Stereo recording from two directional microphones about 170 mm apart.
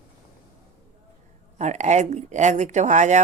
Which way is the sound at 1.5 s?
45° right (ahead or behind).